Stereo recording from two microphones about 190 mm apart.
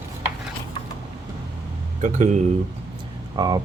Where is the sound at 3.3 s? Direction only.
20° right (ahead or behind).